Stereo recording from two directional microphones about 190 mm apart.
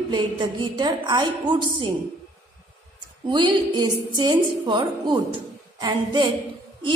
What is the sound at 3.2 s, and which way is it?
A woman's voice, 25° right (ahead or behind).